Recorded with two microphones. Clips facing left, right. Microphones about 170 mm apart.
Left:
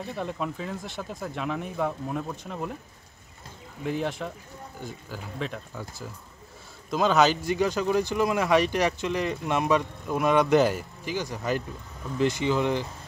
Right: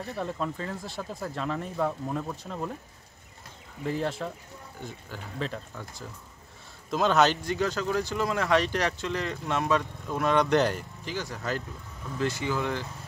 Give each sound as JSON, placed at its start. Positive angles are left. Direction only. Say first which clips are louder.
{"t": 0.1, "sound": "speech", "louder": "even", "side_deg": 0}
{"t": 3.8, "sound": "speech", "louder": "left 1 dB", "side_deg": 0}
{"t": 7.4, "sound": "speech", "louder": "left 3 dB", "side_deg": 15}